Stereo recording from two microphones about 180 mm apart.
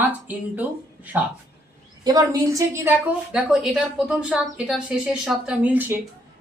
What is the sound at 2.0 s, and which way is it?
Speech, 20° right (ahead or behind).